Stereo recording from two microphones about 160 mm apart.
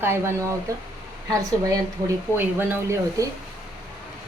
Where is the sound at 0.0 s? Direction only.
15° right (ahead or behind).